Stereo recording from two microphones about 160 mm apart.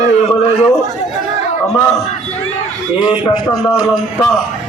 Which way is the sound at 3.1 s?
25° left (ahead or behind).